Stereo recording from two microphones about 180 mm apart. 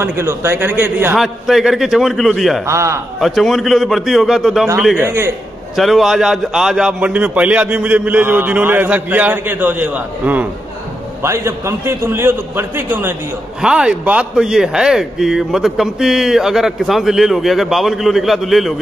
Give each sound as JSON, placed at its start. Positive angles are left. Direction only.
{"t": 0.0, "sound": "a man's voice", "side_deg": -15}
{"t": 2.6, "sound": "a man's voice", "side_deg": -15}
{"t": 3.2, "sound": "a man's voice", "side_deg": 0}
{"t": 4.9, "sound": "a man's voice", "side_deg": -15}
{"t": 5.8, "sound": "a man's voice", "side_deg": 0}